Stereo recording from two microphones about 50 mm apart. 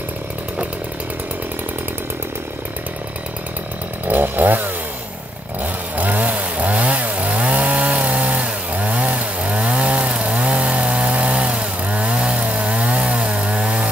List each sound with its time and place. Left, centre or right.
4.1 s chainsaw: right